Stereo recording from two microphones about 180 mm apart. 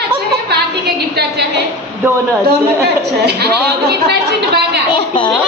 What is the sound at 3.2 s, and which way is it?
A woman's voice, 65° right (ahead or behind).